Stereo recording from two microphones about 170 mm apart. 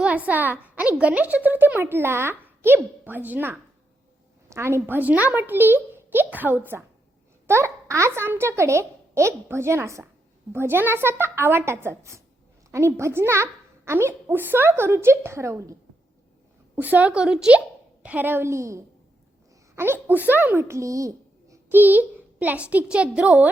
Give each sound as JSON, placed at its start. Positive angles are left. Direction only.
{"t": 0.0, "sound": "a woman's voice", "side_deg": -10}